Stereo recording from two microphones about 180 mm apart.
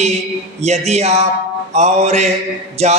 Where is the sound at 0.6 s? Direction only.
40° right (ahead or behind).